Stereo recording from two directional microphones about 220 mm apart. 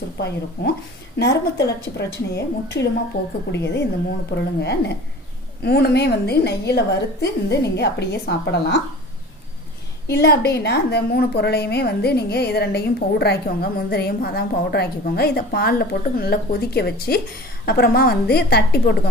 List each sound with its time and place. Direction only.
0.2 s a woman's voice: 50° left (ahead or behind)
10.1 s a woman's voice: 45° left (ahead or behind)